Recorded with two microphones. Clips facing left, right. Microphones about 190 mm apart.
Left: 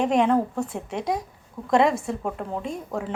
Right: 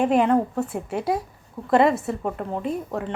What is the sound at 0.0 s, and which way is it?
A woman's voice, 5° right (ahead or behind).